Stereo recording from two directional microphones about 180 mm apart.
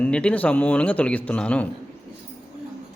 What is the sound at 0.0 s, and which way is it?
Speech, 5° left (ahead or behind).